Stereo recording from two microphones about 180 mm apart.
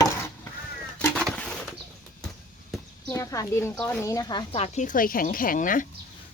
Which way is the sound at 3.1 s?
15° left (ahead or behind).